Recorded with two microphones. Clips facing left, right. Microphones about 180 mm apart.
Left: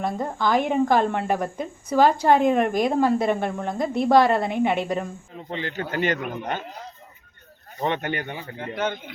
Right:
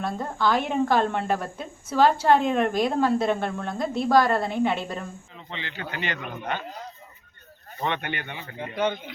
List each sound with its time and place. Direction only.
0.0 s a woman's voice: 15° left (ahead or behind)
5.4 s speech: 45° left (ahead or behind)
7.9 s speech: 40° left (ahead or behind)